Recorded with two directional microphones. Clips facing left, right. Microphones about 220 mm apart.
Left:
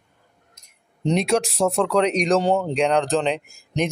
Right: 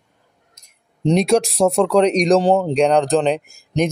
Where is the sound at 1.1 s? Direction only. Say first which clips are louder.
Right 5 dB; 35° right (ahead or behind).